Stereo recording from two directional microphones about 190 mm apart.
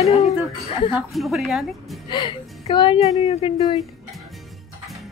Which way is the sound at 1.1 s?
Centre (ahead or behind).